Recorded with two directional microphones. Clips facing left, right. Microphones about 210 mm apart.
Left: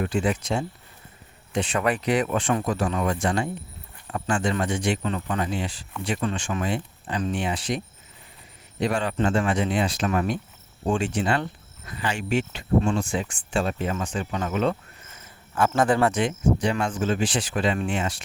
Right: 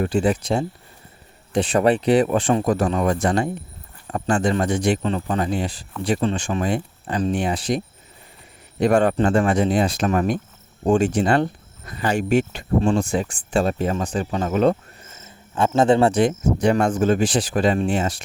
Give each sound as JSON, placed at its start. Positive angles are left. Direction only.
{"t": 0.0, "sound": "speech", "side_deg": -35}
{"t": 2.6, "sound": "speech", "side_deg": -40}
{"t": 8.8, "sound": "speech", "side_deg": -50}
{"t": 15.1, "sound": "speech", "side_deg": -25}